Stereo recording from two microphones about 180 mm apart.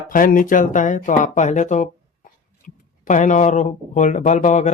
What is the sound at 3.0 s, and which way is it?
Speech, 45° left (ahead or behind).